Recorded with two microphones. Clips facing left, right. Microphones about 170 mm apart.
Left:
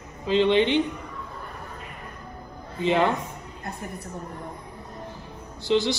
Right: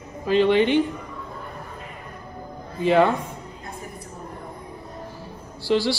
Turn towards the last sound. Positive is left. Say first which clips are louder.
# right 1 dB
turn(degrees=20)  # may be behind; listen again after turning